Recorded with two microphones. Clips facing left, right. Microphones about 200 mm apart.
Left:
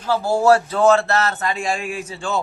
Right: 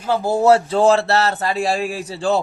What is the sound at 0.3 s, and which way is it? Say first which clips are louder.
A man's voice: right 2 dB; 25° right (ahead or behind).